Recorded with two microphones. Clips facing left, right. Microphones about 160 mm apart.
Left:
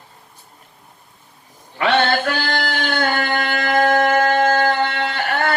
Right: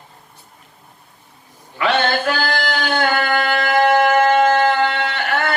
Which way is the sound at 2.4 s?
45° right (ahead or behind).